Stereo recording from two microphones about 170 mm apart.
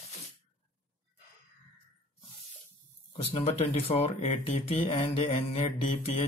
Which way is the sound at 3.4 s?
35° left (ahead or behind).